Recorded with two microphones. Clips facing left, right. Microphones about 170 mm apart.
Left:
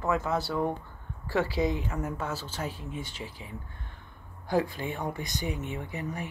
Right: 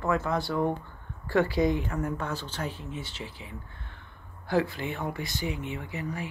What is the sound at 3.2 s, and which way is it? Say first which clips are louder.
Speech: even; 45° left (ahead or behind).